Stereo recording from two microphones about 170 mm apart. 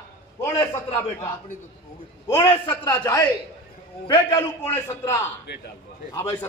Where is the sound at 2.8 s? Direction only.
20° left (ahead or behind).